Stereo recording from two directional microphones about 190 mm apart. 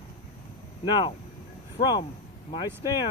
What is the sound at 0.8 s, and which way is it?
Speech, 20° left (ahead or behind).